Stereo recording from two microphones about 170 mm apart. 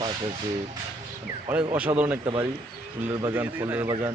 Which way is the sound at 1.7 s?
10° right (ahead or behind).